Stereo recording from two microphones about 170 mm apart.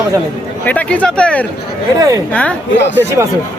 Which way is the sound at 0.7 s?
10° left (ahead or behind).